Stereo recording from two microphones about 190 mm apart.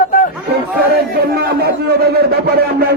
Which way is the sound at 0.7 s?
55° right (ahead or behind).